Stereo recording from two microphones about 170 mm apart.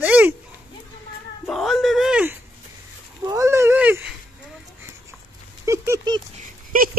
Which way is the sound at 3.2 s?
20° right (ahead or behind).